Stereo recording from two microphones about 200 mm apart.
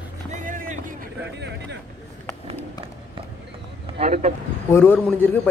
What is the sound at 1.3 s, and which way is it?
Speech, 60° right (ahead or behind).